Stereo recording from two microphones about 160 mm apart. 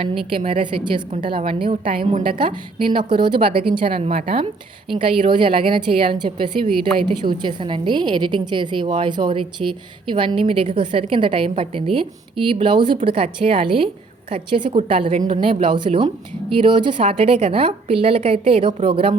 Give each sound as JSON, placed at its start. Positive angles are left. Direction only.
{"t": 0.3, "sound": "a woman's voice", "side_deg": -35}